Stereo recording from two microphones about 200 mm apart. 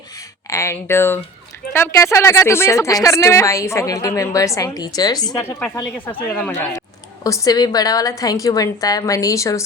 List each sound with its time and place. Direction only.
0.5 s a woman's voice: 15° left (ahead or behind)